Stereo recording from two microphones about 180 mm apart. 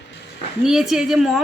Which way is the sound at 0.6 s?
Centre (ahead or behind).